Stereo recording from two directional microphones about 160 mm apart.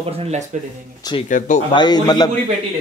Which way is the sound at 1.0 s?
25° left (ahead or behind).